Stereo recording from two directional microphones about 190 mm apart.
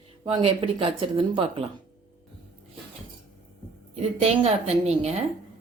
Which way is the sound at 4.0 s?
30° right (ahead or behind).